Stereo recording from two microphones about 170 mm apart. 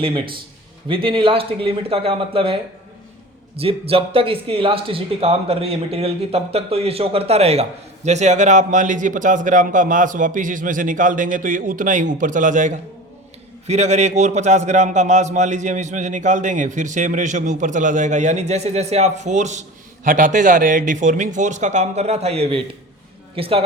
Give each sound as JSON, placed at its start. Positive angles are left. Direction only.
{"t": 0.9, "sound": "a man's voice", "side_deg": -30}